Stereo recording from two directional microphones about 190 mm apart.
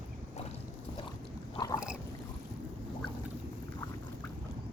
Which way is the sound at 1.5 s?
20° left (ahead or behind).